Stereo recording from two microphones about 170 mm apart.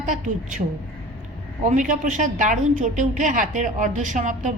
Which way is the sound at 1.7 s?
50° right (ahead or behind).